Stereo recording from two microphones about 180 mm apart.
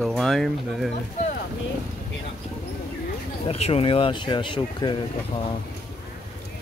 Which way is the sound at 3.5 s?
35° left (ahead or behind).